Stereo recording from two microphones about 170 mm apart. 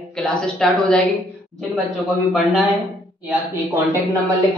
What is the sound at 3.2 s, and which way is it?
Speech, 10° right (ahead or behind).